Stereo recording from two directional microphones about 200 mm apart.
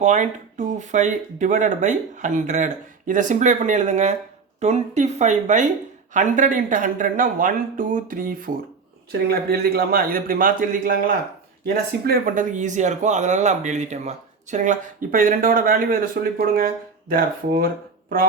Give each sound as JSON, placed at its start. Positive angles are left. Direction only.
{"t": 0.0, "sound": "a man's voice", "side_deg": -40}